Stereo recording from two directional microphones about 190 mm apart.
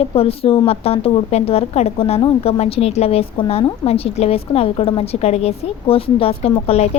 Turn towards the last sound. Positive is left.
turn(degrees=30)  # may be behind; listen again after turning